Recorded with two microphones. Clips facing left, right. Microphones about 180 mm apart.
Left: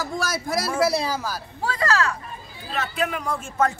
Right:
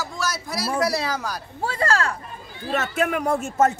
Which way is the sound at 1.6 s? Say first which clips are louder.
Even; 30° right (ahead or behind).